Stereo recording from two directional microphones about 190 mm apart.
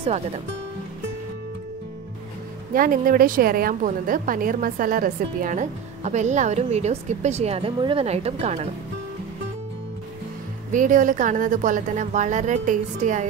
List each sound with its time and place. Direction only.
0.0 s a woman's voice: 35° right (ahead or behind)
2.7 s a woman's voice: 50° right (ahead or behind)
10.7 s a woman's voice: 40° right (ahead or behind)